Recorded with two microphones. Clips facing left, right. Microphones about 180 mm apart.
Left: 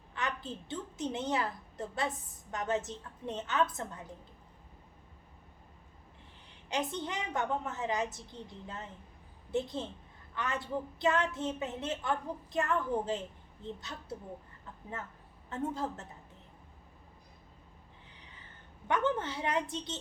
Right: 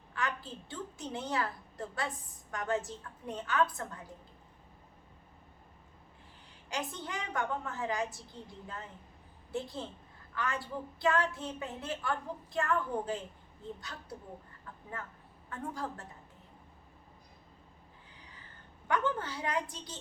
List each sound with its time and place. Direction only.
0.1 s a woman's voice: 20° left (ahead or behind)
6.7 s a woman's voice: 20° left (ahead or behind)
15.4 s a woman's voice: 25° left (ahead or behind)
18.9 s a woman's voice: 20° left (ahead or behind)